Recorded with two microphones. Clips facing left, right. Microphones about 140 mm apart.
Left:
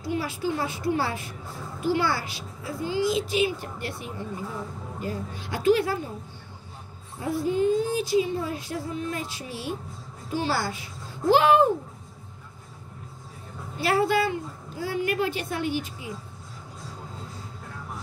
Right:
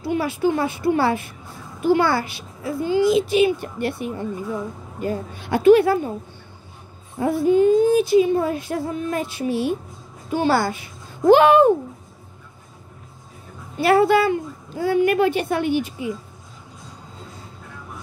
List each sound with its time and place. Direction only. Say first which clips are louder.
0.0 s a woman's voice: right 7 dB; 60° right (ahead or behind)
7.2 s a woman's voice: right 8 dB; 60° right (ahead or behind)
13.7 s a woman's voice: right 7 dB; 60° right (ahead or behind)